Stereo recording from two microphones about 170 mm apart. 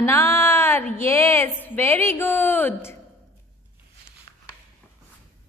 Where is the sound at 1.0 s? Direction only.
15° left (ahead or behind).